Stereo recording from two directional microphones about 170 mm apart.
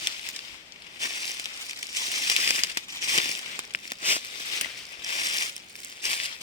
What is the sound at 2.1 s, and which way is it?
Crumpling, 35° left (ahead or behind).